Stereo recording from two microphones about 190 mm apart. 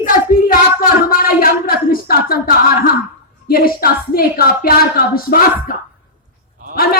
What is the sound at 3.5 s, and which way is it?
A woman's voice, 50° left (ahead or behind).